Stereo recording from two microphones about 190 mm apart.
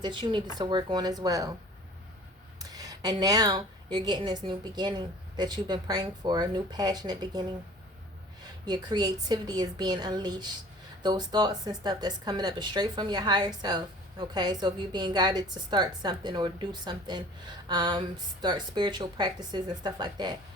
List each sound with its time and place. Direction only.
0.0 s a woman's voice: 25° right (ahead or behind)
2.6 s a woman's voice: 20° right (ahead or behind)
8.6 s a woman's voice: 20° right (ahead or behind)